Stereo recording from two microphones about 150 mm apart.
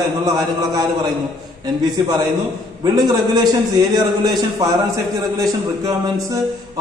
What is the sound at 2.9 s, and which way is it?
Speech, 25° right (ahead or behind).